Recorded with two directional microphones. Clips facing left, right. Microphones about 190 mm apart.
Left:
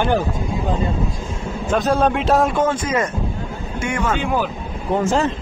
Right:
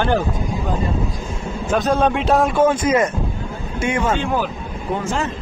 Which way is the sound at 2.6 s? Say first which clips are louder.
Right 4 dB; 20° right (ahead or behind).